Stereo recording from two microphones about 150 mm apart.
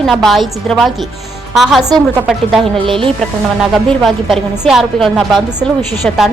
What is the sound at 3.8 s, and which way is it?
A woman's voice, centre (ahead or behind).